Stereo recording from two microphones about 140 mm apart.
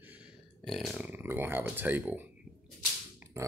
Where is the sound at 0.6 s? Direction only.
Centre (ahead or behind).